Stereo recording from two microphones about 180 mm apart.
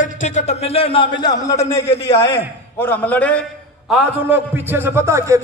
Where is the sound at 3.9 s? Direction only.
10° right (ahead or behind).